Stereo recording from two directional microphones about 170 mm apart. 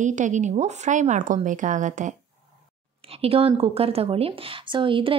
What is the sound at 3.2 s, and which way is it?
A woman's voice, 35° right (ahead or behind).